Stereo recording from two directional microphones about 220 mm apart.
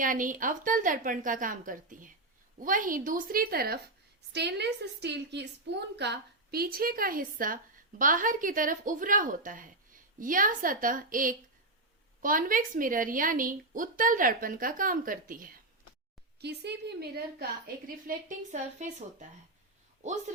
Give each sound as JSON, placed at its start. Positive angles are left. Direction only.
{"t": 0.0, "sound": "a woman's voice", "side_deg": -35}